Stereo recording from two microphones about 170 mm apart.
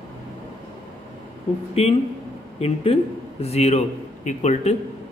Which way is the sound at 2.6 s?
35° left (ahead or behind).